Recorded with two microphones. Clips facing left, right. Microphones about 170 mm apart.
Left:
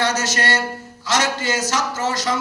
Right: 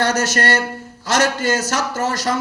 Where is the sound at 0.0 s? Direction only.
55° right (ahead or behind).